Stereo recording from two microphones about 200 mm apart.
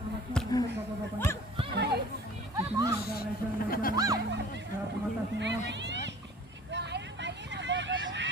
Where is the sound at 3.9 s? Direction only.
20° right (ahead or behind).